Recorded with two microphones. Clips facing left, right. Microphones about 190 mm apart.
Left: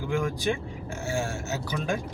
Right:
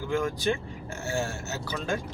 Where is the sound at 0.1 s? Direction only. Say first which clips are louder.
Right 1 dB; 10° left (ahead or behind).